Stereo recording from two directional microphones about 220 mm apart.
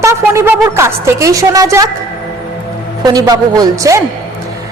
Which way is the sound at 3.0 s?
20° right (ahead or behind).